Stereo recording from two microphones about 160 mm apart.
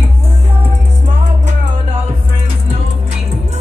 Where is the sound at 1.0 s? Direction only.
45° right (ahead or behind).